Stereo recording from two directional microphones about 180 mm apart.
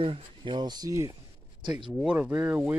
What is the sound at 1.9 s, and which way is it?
Speech, 5° right (ahead or behind).